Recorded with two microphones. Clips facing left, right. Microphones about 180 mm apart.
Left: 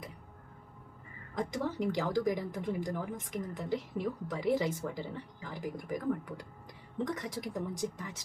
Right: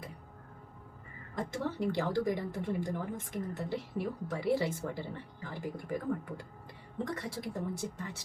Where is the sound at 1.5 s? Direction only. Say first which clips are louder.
Right 1 dB; 15° left (ahead or behind).